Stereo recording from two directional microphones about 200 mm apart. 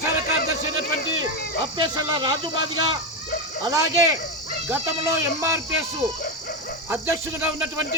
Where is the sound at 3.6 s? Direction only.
15° right (ahead or behind).